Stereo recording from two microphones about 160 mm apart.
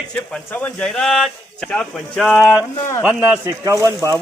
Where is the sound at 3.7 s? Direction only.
20° right (ahead or behind).